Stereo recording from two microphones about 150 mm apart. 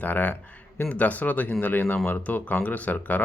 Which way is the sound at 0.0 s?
10° left (ahead or behind).